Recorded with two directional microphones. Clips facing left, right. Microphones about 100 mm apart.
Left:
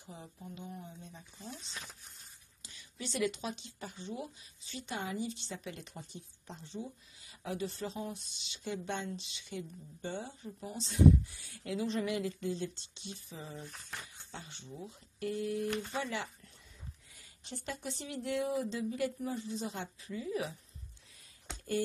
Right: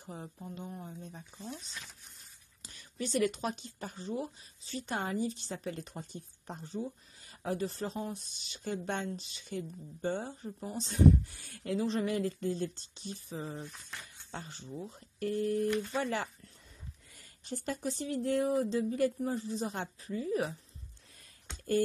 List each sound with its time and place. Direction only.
0.0 s speech: 45° right (ahead or behind)
2.6 s speech: 45° right (ahead or behind)
10.9 s speech: 50° right (ahead or behind)
11.8 s speech: 35° right (ahead or behind)
17.5 s speech: 45° right (ahead or behind)